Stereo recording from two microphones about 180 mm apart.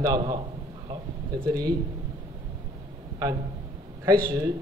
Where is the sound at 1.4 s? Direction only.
20° right (ahead or behind).